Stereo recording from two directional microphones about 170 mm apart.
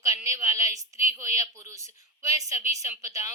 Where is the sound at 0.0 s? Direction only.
20° right (ahead or behind).